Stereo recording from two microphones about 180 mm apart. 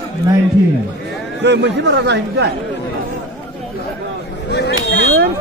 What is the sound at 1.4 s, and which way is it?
Speech, 70° right (ahead or behind).